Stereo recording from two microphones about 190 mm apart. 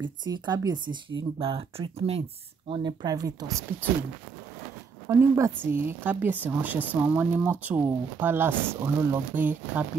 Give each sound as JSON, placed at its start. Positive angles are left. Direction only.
{"t": 0.2, "sound": "speech", "side_deg": -20}
{"t": 5.0, "sound": "speech", "side_deg": -15}